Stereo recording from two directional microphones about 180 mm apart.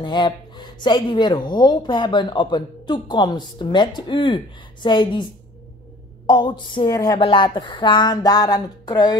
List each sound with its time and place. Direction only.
0.0 s speech: 25° left (ahead or behind)
6.2 s speech: 25° left (ahead or behind)